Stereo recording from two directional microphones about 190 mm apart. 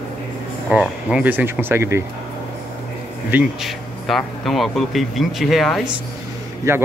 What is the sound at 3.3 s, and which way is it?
Speech, 5° right (ahead or behind).